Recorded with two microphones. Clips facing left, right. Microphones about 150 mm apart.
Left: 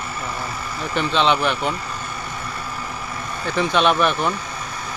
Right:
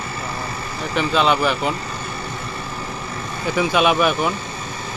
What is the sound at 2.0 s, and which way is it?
Vehicle, 30° right (ahead or behind).